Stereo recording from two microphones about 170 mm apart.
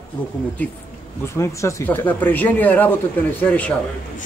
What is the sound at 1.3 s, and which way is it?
Speech, 20° left (ahead or behind).